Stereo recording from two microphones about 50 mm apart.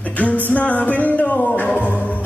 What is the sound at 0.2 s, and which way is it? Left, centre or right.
Music, left.